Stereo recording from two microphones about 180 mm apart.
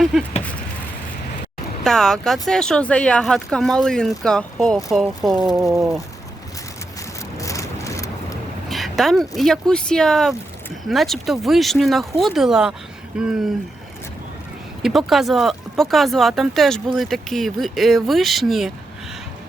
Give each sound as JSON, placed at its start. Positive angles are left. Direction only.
{"t": 0.0, "sound": "speech", "side_deg": 0}
{"t": 1.8, "sound": "speech", "side_deg": 0}
{"t": 7.3, "sound": "vehicle", "side_deg": 15}
{"t": 8.7, "sound": "speech", "side_deg": 0}
{"t": 14.8, "sound": "speech", "side_deg": 0}